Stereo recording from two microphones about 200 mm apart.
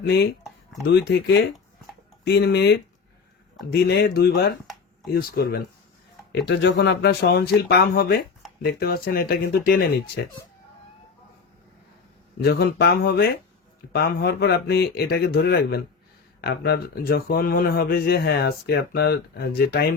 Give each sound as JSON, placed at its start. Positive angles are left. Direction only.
{"t": 0.1, "sound": "speech", "side_deg": 55}
{"t": 12.4, "sound": "speech", "side_deg": 55}